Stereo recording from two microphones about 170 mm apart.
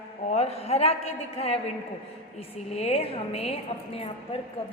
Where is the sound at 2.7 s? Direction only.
40° left (ahead or behind).